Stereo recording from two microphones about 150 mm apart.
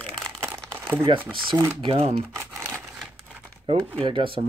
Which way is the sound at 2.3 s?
20° right (ahead or behind).